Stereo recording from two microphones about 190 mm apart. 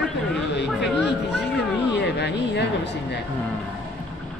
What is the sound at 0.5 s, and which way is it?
Speech, 65° left (ahead or behind).